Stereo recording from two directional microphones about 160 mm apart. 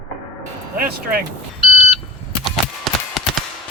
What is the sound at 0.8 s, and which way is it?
Music, 65° right (ahead or behind).